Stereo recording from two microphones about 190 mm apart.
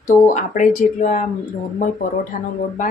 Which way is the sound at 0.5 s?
40° left (ahead or behind).